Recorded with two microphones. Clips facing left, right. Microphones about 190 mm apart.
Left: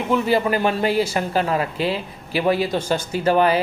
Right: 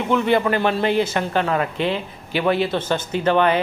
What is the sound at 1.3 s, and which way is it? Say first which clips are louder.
Speech: even; 35° left (ahead or behind).